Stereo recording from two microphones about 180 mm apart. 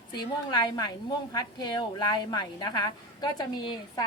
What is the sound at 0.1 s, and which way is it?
A woman's voice, 25° left (ahead or behind).